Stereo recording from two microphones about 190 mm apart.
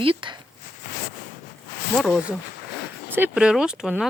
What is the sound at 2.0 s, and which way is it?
Speech, 5° right (ahead or behind).